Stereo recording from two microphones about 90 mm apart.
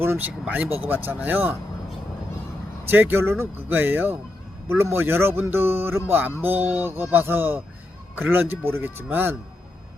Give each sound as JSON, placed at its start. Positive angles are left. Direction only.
{"t": 0.0, "sound": "speech", "side_deg": -20}
{"t": 2.8, "sound": "speech", "side_deg": -25}